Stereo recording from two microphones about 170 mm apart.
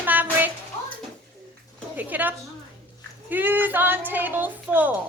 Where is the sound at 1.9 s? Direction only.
10° right (ahead or behind).